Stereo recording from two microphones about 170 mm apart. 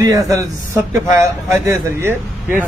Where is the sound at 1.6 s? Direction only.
15° right (ahead or behind).